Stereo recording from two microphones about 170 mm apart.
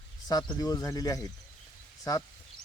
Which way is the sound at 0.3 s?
25° left (ahead or behind).